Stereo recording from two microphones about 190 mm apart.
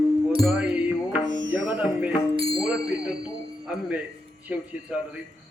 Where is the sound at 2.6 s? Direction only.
5° right (ahead or behind).